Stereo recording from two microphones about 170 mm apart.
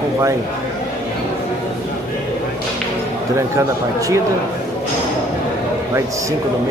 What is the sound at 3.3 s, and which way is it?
Speech, 20° right (ahead or behind).